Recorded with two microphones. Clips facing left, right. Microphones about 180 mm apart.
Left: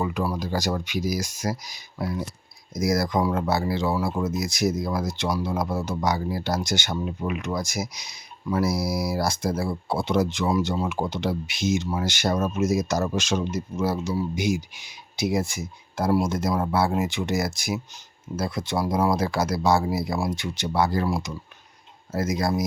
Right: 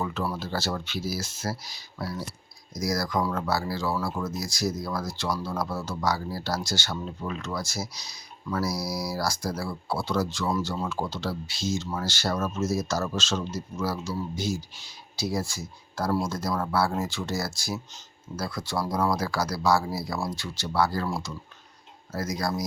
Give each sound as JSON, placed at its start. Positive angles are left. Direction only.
{"t": 0.0, "sound": "speech", "side_deg": 15}